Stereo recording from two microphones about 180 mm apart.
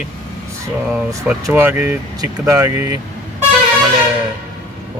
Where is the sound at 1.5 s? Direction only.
15° right (ahead or behind).